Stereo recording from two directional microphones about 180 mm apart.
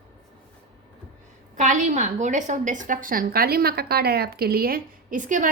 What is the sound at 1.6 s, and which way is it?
A woman's voice, 45° right (ahead or behind).